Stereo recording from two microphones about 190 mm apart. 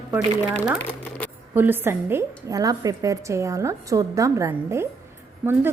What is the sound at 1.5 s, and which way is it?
A woman's voice, 10° right (ahead or behind).